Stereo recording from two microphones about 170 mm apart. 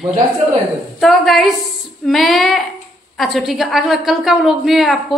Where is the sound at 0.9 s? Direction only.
Centre (ahead or behind).